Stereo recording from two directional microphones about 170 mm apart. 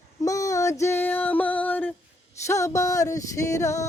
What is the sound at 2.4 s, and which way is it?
Mantra, 15° left (ahead or behind).